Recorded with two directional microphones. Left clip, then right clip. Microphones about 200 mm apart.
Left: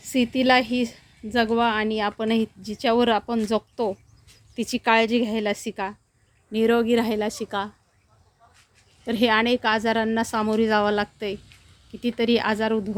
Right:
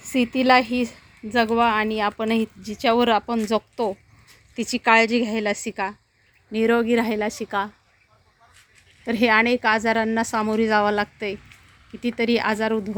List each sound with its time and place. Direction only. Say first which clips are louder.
0.0 s a woman's voice: right 1 dB; centre (ahead or behind)
9.0 s a woman's voice: right 2 dB; centre (ahead or behind)